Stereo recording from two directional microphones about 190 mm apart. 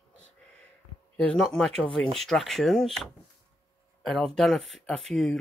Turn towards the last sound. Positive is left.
turn(degrees=0)  # may be behind; listen again after turning